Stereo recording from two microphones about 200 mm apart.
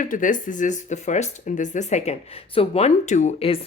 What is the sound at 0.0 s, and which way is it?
Speech, 40° left (ahead or behind).